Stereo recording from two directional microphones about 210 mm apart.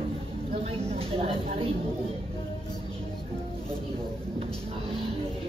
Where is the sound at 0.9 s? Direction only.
25° right (ahead or behind).